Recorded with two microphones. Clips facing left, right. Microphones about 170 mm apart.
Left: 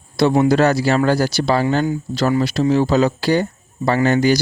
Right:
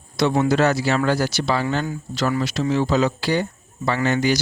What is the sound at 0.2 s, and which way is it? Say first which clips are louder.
Speech: left 4 dB; 35° left (ahead or behind).